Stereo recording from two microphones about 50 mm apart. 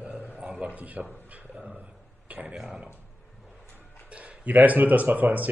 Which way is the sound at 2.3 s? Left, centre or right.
Right.